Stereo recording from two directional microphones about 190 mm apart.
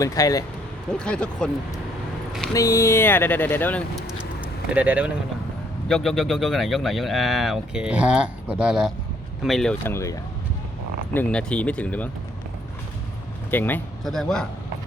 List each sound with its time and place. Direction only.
0.0 s speech: 20° left (ahead or behind)
0.9 s speech: 5° left (ahead or behind)
2.5 s speech: 15° left (ahead or behind)
13.5 s speech: 10° left (ahead or behind)